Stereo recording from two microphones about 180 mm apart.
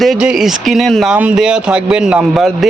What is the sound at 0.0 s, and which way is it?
Speech, centre (ahead or behind).